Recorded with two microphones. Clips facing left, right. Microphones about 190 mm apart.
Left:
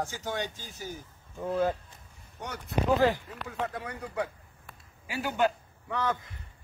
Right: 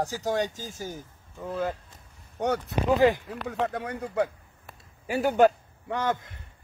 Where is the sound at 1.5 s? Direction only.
15° left (ahead or behind).